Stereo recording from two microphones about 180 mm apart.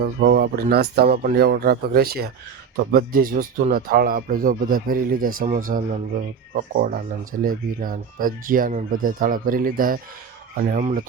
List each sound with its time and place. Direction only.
0.0 s speech: 60° right (ahead or behind)